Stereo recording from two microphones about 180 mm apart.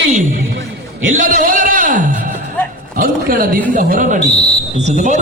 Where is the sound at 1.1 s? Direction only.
50° right (ahead or behind).